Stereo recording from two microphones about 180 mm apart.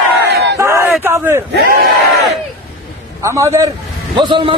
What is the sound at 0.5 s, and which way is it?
Speech, 15° right (ahead or behind).